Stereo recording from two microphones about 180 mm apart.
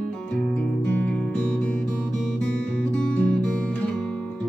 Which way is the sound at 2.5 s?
5° left (ahead or behind).